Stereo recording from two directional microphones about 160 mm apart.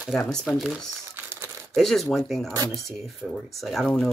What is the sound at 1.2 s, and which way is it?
Crumpling, 15° right (ahead or behind).